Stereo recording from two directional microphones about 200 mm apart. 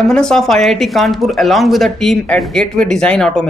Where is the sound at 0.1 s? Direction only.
5° left (ahead or behind).